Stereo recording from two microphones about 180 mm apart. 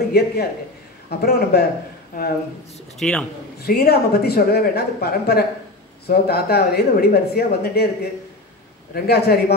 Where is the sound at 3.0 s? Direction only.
5° left (ahead or behind).